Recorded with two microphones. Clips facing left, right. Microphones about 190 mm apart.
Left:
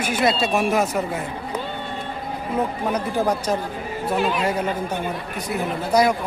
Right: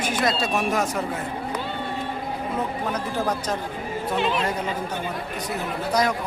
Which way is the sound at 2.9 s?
10° left (ahead or behind).